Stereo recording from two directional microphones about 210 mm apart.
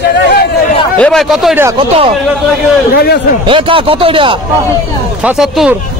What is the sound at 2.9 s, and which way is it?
Speech, 45° left (ahead or behind).